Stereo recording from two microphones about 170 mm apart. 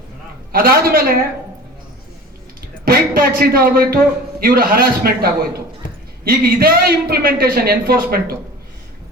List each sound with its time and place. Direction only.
0.5 s a man's voice: 60° right (ahead or behind)
2.8 s a man's voice: 60° right (ahead or behind)